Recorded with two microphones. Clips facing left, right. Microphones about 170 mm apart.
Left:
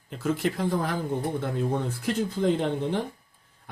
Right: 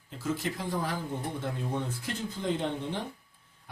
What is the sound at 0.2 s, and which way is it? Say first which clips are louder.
Speech: left 6 dB; 60° left (ahead or behind).